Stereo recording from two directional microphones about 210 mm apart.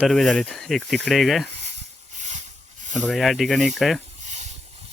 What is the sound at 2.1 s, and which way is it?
Hiss, 35° right (ahead or behind).